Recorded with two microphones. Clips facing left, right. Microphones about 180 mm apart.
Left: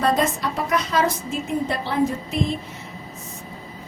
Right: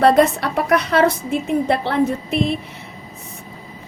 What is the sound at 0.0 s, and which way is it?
A woman's voice, 65° right (ahead or behind).